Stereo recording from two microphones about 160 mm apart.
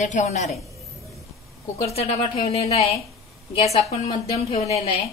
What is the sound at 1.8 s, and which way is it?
Speech, 40° left (ahead or behind).